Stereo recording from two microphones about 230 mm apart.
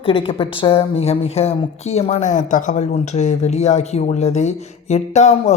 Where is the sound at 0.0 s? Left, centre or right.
Left.